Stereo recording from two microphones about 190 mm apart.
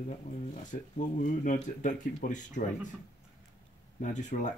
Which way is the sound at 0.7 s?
40° left (ahead or behind).